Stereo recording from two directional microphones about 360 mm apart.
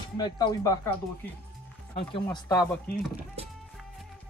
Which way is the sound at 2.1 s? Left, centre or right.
Centre.